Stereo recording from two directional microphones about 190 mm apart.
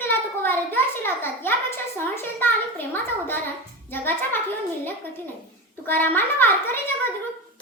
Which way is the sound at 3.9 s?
10° left (ahead or behind).